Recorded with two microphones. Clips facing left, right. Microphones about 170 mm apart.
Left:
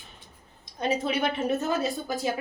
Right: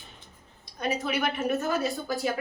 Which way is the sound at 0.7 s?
25° left (ahead or behind).